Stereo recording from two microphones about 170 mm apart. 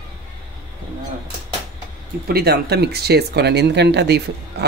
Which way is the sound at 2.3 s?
70° right (ahead or behind).